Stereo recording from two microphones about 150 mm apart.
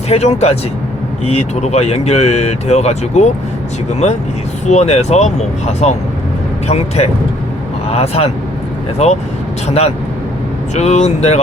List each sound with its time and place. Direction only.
0.1 s speech: 45° left (ahead or behind)
4.7 s speech: 45° left (ahead or behind)